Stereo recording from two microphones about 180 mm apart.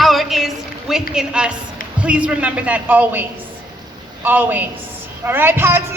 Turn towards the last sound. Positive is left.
turn(degrees=-10)  # may be behind; listen again after turning